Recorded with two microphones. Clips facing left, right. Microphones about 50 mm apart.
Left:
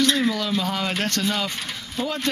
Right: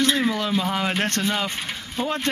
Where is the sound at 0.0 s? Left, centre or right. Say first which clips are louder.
Even; centre.